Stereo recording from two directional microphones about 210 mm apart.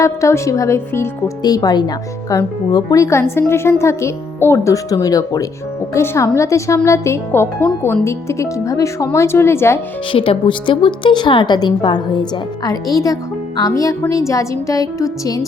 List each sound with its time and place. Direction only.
0.0 s speech: 15° left (ahead or behind)
10.1 s a woman's voice: 25° left (ahead or behind)